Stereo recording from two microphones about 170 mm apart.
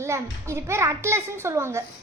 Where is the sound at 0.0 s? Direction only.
15° right (ahead or behind).